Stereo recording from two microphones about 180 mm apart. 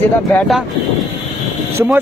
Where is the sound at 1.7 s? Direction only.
10° right (ahead or behind).